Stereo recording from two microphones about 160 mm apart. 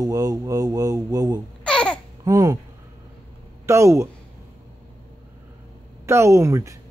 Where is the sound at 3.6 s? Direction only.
20° right (ahead or behind).